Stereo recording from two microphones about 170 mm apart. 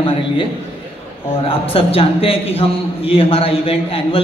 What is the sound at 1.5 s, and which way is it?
A man's voice, 35° left (ahead or behind).